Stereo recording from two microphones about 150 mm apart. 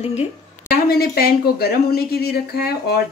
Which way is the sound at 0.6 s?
90° left.